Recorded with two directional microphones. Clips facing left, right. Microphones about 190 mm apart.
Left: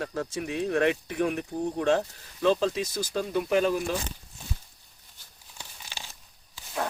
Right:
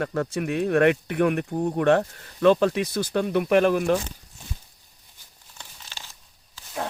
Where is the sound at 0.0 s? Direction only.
60° right (ahead or behind).